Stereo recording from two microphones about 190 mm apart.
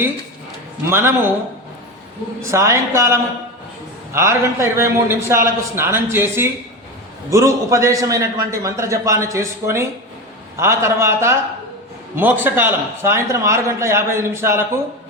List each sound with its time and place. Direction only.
0.9 s a man's voice: 10° right (ahead or behind)
2.4 s a man's voice: 15° right (ahead or behind)